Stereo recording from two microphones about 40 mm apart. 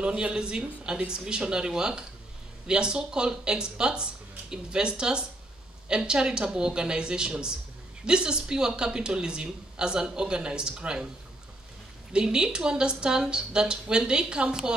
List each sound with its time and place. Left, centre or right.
0.0 s a woman's voice: right
12.1 s a woman's voice: centre